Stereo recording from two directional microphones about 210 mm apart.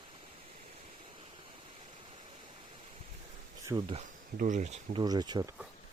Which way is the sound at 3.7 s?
20° right (ahead or behind).